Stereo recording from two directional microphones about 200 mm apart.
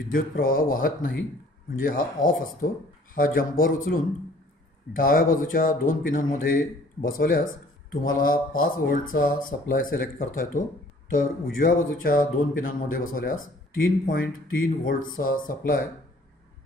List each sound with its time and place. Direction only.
0.1 s speech: 45° left (ahead or behind)